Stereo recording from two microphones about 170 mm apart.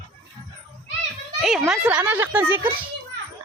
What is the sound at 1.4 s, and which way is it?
Speech, centre (ahead or behind).